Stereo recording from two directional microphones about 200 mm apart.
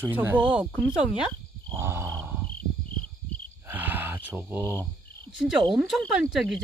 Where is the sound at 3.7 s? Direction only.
10° right (ahead or behind).